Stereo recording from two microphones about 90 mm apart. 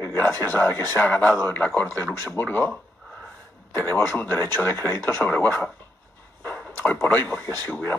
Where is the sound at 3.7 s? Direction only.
20° left (ahead or behind).